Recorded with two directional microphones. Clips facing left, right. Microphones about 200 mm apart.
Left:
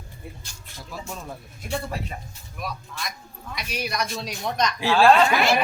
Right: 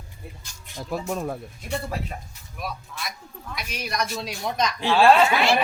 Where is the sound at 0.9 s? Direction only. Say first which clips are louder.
Right 8 dB; 55° right (ahead or behind).